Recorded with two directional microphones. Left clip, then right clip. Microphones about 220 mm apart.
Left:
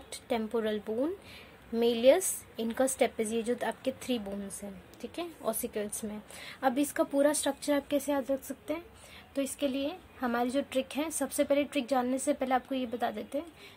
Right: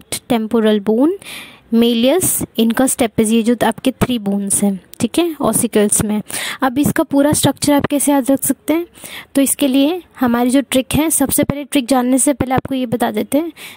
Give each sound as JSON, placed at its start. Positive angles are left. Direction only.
{"t": 0.1, "sound": "a woman's voice", "side_deg": -40}